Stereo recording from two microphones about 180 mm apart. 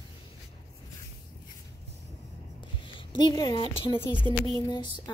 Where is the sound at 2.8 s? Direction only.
25° left (ahead or behind).